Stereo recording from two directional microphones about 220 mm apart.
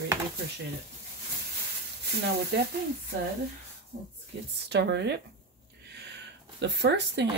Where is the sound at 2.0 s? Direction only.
50° right (ahead or behind).